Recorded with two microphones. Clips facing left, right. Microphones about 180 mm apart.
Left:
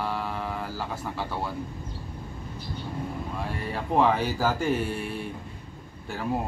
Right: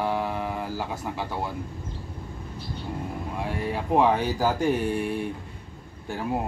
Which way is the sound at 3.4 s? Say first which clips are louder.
Right 6 dB; 15° right (ahead or behind).